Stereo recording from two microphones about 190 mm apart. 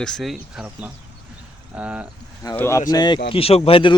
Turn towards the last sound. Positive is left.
turn(degrees=30)  # may be behind; listen again after turning